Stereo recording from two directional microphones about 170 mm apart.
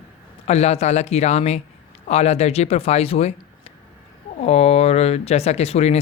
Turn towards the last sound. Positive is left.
turn(degrees=40)  # may be behind; listen again after turning